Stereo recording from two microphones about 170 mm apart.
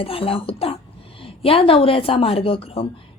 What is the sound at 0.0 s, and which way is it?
A woman's voice, 35° left (ahead or behind).